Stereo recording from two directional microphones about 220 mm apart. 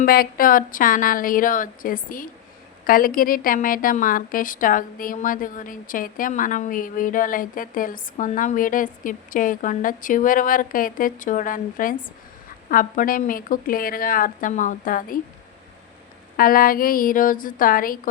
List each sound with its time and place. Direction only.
0.0 s a woman's voice: 40° left (ahead or behind)
16.4 s a woman's voice: 40° left (ahead or behind)